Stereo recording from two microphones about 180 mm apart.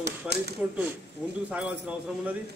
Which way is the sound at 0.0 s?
65° right (ahead or behind).